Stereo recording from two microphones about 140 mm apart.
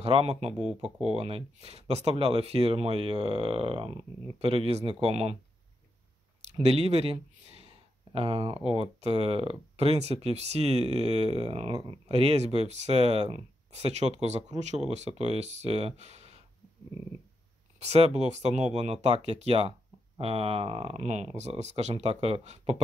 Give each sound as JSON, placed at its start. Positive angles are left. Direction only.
{"t": 0.0, "sound": "speech", "side_deg": -45}
{"t": 0.6, "sound": "speech", "side_deg": -5}
{"t": 1.0, "sound": "speech", "side_deg": -45}
{"t": 6.7, "sound": "speech", "side_deg": -45}
{"t": 17.7, "sound": "speech", "side_deg": -50}